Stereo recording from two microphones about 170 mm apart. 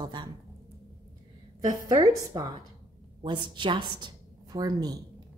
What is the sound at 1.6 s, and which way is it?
A woman's voice, 25° right (ahead or behind).